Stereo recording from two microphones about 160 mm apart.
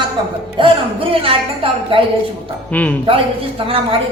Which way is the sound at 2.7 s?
10° left (ahead or behind).